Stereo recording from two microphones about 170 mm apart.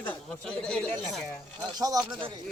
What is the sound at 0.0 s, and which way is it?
Speech, 10° left (ahead or behind).